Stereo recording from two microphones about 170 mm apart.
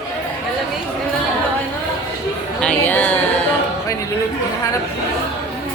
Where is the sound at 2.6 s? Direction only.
10° left (ahead or behind).